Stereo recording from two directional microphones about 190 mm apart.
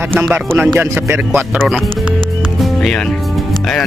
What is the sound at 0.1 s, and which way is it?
Speech, 10° right (ahead or behind).